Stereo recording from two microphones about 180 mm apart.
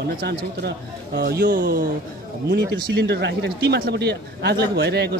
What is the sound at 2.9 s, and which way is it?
A man's voice, 65° right (ahead or behind).